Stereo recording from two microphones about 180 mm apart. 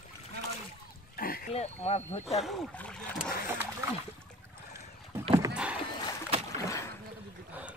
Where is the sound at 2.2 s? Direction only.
Centre (ahead or behind).